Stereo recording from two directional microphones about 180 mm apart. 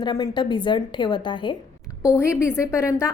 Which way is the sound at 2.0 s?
15° left (ahead or behind).